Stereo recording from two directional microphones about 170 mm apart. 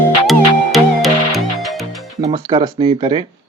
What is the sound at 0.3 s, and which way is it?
Music, centre (ahead or behind).